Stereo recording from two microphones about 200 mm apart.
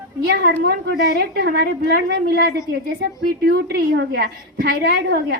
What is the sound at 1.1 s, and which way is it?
A woman's voice, 55° right (ahead or behind).